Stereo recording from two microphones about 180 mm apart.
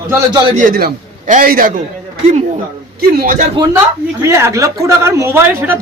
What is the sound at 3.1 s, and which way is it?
Speech, 50° right (ahead or behind).